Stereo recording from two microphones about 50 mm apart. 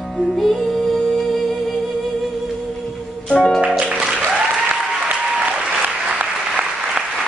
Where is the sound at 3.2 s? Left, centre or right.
Left.